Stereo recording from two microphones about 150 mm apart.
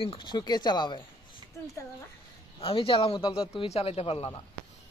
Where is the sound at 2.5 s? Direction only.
35° left (ahead or behind).